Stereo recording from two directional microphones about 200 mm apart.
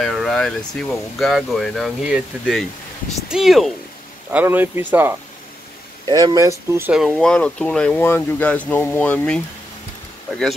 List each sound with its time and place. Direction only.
0.0 s speech: centre (ahead or behind); by 6.5 s 20° right (ahead or behind)
6.7 s speech: 5° right (ahead or behind)